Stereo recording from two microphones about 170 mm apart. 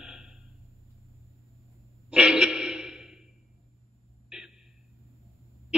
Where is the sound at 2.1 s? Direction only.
5° right (ahead or behind).